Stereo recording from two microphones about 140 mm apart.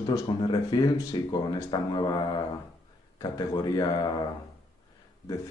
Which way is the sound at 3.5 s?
30° left (ahead or behind).